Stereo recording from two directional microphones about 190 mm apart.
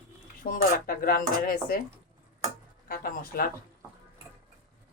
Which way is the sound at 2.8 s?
50° left (ahead or behind).